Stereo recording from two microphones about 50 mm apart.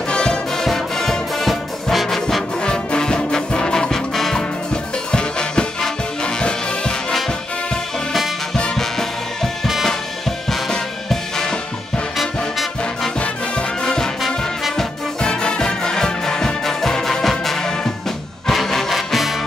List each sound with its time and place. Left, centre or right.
0.1 s music: centre
0.7 s brass instrument: centre
2.6 s brass instrument: centre
3.9 s music: centre
8.7 s music: centre
12.2 s music: centre
13.2 s music: centre
14.2 s brass instrument: centre
15.1 s music: centre